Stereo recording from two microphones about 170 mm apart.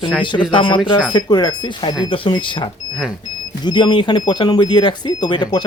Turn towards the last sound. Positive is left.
turn(degrees=25)  # may be behind; listen again after turning